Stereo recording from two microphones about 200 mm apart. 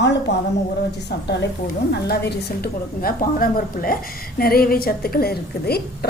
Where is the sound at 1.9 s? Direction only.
55° left (ahead or behind).